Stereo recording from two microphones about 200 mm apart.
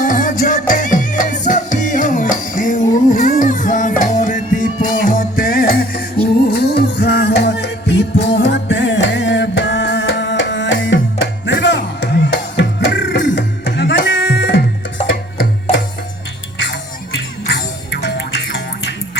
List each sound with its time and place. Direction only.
0.0 s music: 40° left (ahead or behind); by 14.6 s 60° left (ahead or behind)
16.6 s music: 60° left (ahead or behind)